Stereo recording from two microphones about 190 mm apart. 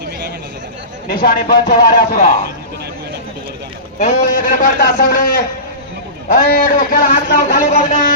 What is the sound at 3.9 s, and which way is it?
A man's voice, 45° left (ahead or behind).